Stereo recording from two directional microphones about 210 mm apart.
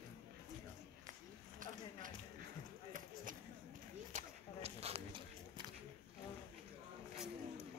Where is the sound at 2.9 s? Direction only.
40° right (ahead or behind).